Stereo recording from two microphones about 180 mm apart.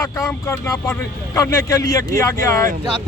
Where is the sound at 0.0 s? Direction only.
15° left (ahead or behind).